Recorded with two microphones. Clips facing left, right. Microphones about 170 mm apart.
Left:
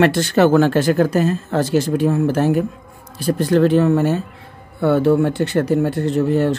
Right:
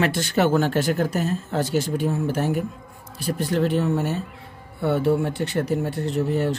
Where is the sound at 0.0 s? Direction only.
85° left.